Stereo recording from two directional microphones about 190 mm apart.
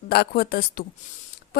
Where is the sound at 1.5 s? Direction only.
50° left (ahead or behind).